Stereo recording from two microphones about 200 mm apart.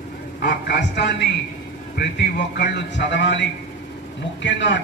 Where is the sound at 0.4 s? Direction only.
60° left (ahead or behind).